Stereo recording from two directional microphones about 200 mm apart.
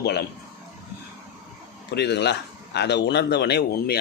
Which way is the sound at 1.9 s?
60° left (ahead or behind).